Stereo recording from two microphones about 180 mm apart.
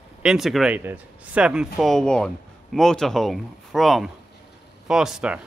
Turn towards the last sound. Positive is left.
turn(degrees=-5)  # may be behind; listen again after turning